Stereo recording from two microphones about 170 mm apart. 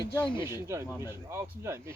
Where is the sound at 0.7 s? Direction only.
15° right (ahead or behind).